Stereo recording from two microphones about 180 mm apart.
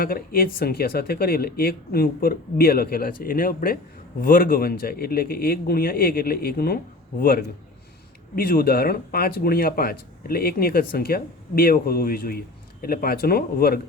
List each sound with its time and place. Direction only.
0.0 s a man's voice: 55° left (ahead or behind)